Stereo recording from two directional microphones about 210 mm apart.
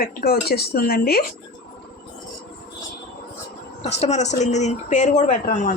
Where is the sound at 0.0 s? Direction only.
45° left (ahead or behind).